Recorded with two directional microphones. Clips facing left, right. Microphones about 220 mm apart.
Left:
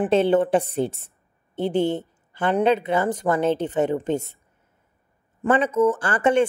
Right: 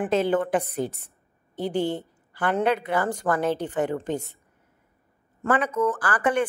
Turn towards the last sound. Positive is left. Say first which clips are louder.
# left 4 dB
turn(degrees=25)  # may be behind; listen again after turning